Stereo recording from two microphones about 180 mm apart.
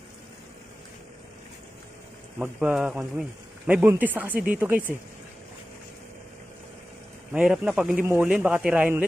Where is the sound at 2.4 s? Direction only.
5° right (ahead or behind).